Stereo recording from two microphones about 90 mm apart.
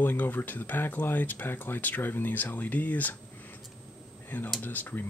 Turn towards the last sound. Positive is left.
turn(degrees=20)  # may be behind; listen again after turning